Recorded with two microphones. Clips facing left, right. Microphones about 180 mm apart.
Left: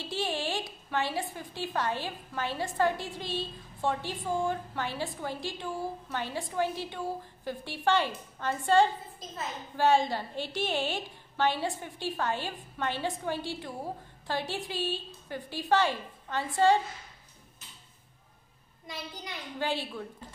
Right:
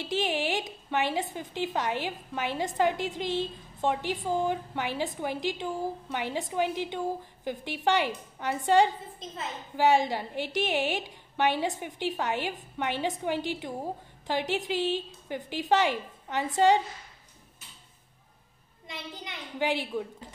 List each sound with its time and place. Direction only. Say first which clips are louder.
0.0 s a woman's voice: right 4 dB; 15° right (ahead or behind)
18.9 s a woman's voice: even; 20° right (ahead or behind)